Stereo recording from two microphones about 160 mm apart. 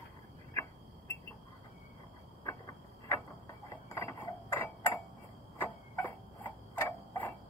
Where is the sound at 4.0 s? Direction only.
15° left (ahead or behind).